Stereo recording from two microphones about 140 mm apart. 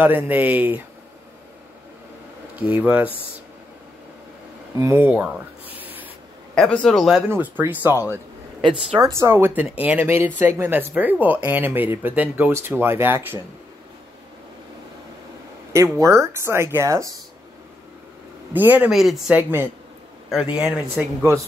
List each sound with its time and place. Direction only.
0.0 s speech: 15° right (ahead or behind)
2.6 s speech: 10° right (ahead or behind)
4.7 s speech: 15° right (ahead or behind)
6.5 s a man's voice: 5° left (ahead or behind)
7.2 s speech: 15° right (ahead or behind)
9.2 s speech: 15° right (ahead or behind)
15.7 s speech: 20° right (ahead or behind)
18.5 s speech: 10° right (ahead or behind)